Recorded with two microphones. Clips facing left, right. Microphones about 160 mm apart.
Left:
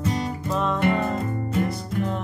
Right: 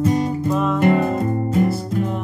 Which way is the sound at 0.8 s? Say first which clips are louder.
Right 6 dB; 40° right (ahead or behind).